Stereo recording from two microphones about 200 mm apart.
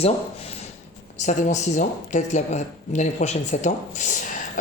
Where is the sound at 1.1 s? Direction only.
35° left (ahead or behind).